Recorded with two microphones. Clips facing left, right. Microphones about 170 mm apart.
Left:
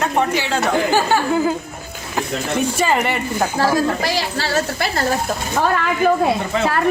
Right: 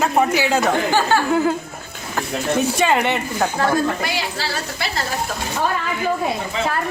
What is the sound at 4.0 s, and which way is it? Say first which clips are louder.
A woman's voice: left 3 dB; 40° left (ahead or behind).